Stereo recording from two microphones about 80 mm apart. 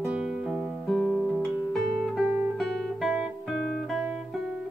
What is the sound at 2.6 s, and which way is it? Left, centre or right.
Guitar, centre.